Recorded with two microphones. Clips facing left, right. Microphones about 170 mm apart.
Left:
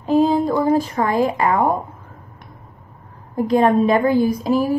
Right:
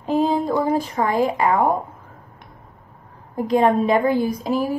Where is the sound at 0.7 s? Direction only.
15° right (ahead or behind).